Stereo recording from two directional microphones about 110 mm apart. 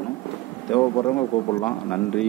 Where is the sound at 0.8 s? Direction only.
30° left (ahead or behind).